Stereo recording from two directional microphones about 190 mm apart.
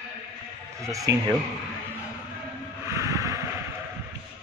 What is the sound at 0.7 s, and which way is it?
Speech, 15° right (ahead or behind).